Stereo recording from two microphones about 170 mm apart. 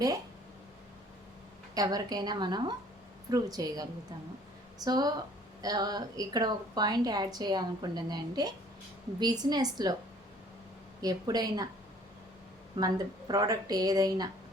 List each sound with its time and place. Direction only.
1.7 s a woman's voice: 20° right (ahead or behind)
11.0 s a woman's voice: 20° right (ahead or behind)
12.7 s a woman's voice: 25° right (ahead or behind)